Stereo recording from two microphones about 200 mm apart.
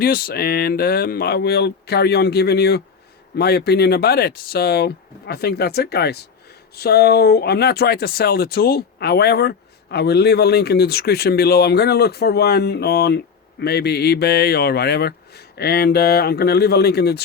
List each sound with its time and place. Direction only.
0.0 s speech: 45° left (ahead or behind)